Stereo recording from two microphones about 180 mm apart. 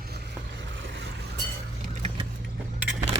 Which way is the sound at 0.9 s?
65° right (ahead or behind).